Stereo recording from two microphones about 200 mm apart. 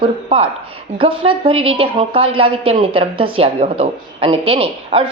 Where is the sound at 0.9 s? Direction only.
25° right (ahead or behind).